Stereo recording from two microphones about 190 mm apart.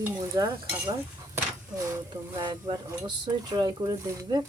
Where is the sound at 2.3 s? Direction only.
20° right (ahead or behind).